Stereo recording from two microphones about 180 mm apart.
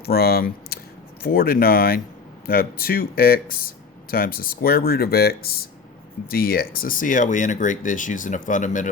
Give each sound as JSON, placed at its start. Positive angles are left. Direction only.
{"t": 0.0, "sound": "speech", "side_deg": 60}